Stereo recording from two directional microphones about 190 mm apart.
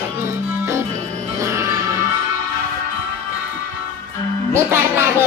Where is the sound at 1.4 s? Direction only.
15° right (ahead or behind).